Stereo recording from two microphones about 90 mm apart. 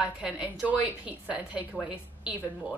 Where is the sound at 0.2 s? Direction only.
10° right (ahead or behind).